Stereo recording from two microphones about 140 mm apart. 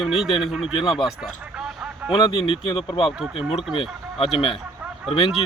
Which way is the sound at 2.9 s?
40° left (ahead or behind).